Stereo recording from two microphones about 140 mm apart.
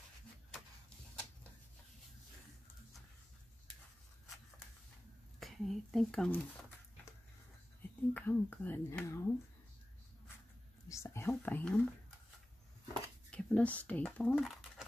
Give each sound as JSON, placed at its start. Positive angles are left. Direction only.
{"t": 5.4, "sound": "speech", "side_deg": 0}
{"t": 8.1, "sound": "speech", "side_deg": 15}
{"t": 10.9, "sound": "speech", "side_deg": 20}
{"t": 13.3, "sound": "speech", "side_deg": 10}
{"t": 14.3, "sound": "a sound", "side_deg": 0}